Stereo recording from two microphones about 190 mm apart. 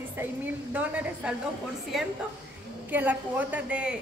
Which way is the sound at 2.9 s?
10° right (ahead or behind).